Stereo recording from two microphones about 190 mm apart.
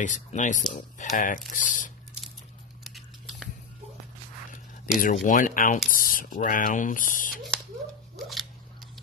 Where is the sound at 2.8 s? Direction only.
Centre (ahead or behind).